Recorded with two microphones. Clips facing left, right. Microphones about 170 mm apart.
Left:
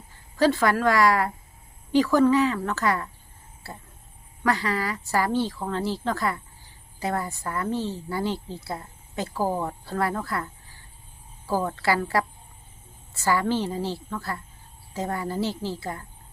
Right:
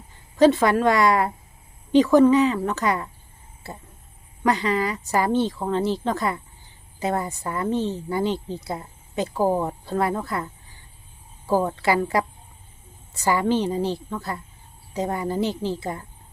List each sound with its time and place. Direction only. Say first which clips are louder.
0.3 s a woman's voice: right 4 dB; 20° right (ahead or behind)
3.6 s a sound: right 3 dB; 20° right (ahead or behind)
4.4 s a woman's voice: right 4 dB; 20° right (ahead or behind)